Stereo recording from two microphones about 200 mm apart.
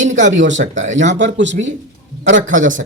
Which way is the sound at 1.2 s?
65° right (ahead or behind).